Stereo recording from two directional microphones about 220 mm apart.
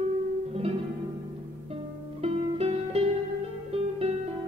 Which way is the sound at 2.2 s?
25° right (ahead or behind).